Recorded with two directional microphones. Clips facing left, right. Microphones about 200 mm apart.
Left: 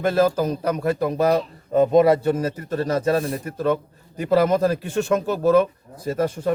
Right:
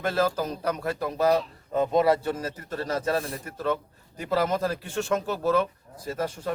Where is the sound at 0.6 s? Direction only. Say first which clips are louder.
Left 7 dB; 15° left (ahead or behind).